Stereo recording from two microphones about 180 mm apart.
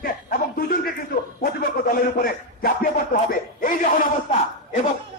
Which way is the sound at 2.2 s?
55° left (ahead or behind).